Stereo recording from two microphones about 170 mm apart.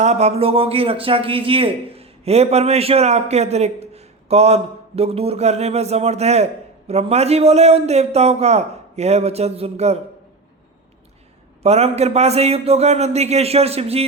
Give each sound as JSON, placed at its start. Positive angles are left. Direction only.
{"t": 0.0, "sound": "speech", "side_deg": -40}
{"t": 11.6, "sound": "speech", "side_deg": -40}